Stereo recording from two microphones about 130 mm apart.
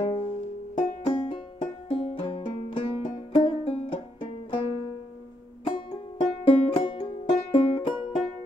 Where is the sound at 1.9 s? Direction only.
50° left (ahead or behind).